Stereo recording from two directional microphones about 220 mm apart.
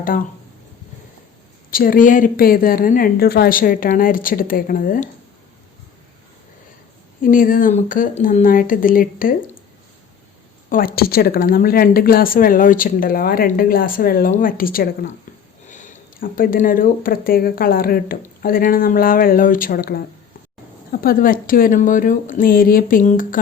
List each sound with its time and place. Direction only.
1.7 s speech: 40° left (ahead or behind)
7.2 s speech: 40° left (ahead or behind)
10.7 s speech: 40° left (ahead or behind)